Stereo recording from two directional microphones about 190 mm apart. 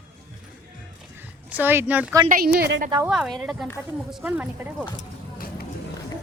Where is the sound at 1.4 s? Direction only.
10° right (ahead or behind).